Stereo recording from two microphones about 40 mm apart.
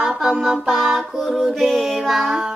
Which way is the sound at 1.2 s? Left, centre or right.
Centre.